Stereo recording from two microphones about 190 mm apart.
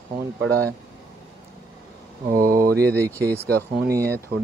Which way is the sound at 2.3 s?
50° right (ahead or behind).